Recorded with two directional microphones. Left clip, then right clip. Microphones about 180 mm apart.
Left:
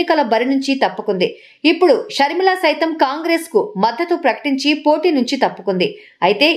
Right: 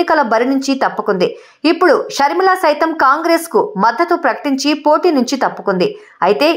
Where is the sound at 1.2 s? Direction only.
35° right (ahead or behind).